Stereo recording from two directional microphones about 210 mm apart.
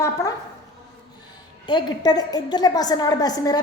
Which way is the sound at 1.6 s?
20° left (ahead or behind).